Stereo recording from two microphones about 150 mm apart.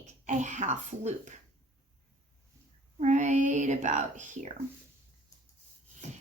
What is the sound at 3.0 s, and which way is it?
Speech, 55° right (ahead or behind).